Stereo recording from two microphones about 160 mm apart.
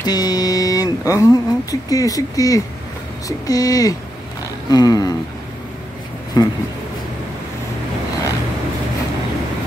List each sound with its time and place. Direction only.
0.0 s speech: 25° left (ahead or behind)
6.4 s speech: 20° left (ahead or behind)